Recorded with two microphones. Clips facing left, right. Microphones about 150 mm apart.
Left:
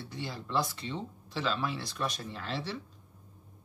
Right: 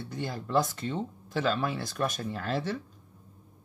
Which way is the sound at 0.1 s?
45° right (ahead or behind).